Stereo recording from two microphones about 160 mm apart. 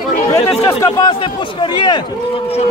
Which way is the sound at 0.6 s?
20° left (ahead or behind).